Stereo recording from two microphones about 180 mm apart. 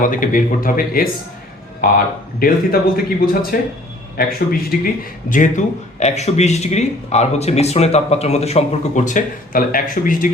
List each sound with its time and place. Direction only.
0.0 s a man's voice: 50° left (ahead or behind)
4.7 s a man's voice: 55° left (ahead or behind)
5.3 s speech: 45° left (ahead or behind)